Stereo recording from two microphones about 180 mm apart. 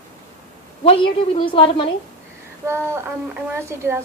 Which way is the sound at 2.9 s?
10° right (ahead or behind).